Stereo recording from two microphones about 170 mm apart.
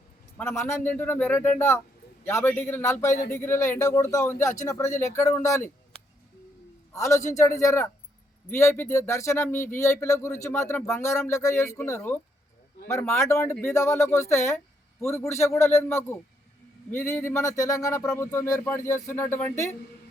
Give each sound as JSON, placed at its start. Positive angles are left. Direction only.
{"t": 0.3, "sound": "speech", "side_deg": 15}
{"t": 6.9, "sound": "speech", "side_deg": 15}